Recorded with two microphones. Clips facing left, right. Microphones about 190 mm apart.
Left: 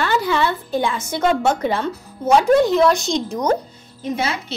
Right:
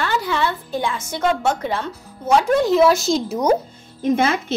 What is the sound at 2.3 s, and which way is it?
Speech, centre (ahead or behind).